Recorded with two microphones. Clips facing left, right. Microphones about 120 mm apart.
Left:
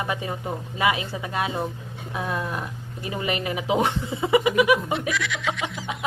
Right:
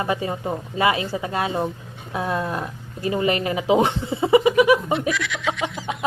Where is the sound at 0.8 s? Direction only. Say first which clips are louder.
Right 3 dB; 35° right (ahead or behind).